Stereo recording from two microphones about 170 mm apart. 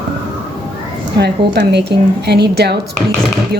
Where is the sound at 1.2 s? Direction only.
75° right (ahead or behind).